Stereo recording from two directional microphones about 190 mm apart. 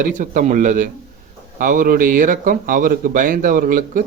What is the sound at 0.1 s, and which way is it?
A man's voice, 40° right (ahead or behind).